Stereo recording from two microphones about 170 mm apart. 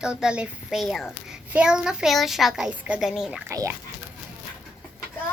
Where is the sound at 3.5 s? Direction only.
20° right (ahead or behind).